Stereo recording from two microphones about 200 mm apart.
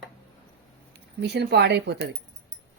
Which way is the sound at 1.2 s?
55° right (ahead or behind).